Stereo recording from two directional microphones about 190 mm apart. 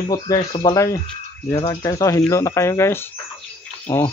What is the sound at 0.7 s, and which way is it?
Speech, 15° left (ahead or behind).